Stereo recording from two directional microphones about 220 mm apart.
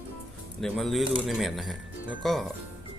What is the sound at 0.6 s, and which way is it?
Speech, centre (ahead or behind).